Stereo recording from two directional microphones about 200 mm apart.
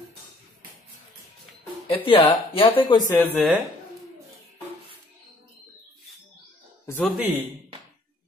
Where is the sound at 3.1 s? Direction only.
10° left (ahead or behind).